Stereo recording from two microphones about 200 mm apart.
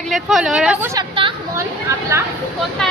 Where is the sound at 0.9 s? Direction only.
20° right (ahead or behind).